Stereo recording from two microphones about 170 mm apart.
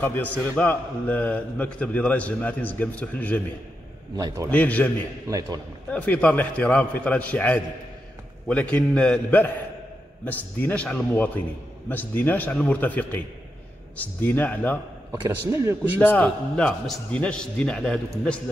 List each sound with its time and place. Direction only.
0.0 s a man's voice: 10° left (ahead or behind)
4.5 s a man's voice: 10° left (ahead or behind)
15.2 s a man's voice: 15° right (ahead or behind)
16.0 s a man's voice: 10° left (ahead or behind)